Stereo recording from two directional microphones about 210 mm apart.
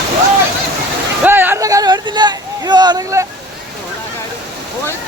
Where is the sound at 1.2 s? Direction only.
10° right (ahead or behind).